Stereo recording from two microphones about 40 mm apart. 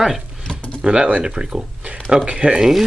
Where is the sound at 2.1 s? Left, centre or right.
Centre.